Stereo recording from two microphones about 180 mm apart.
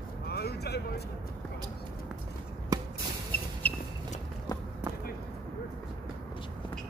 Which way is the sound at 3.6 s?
10° left (ahead or behind).